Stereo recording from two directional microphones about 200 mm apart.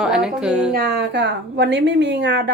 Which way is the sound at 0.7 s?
55° right (ahead or behind).